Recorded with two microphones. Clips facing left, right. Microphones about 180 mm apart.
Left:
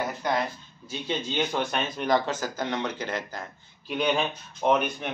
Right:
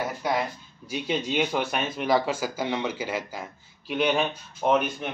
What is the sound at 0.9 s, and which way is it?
Speech, 10° right (ahead or behind).